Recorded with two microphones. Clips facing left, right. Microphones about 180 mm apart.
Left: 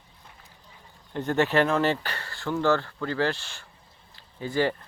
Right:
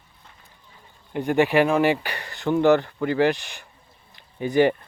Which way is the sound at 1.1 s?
15° right (ahead or behind).